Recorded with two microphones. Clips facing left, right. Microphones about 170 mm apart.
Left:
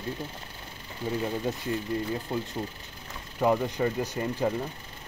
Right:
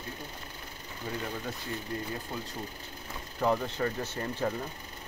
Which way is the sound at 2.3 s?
25° left (ahead or behind).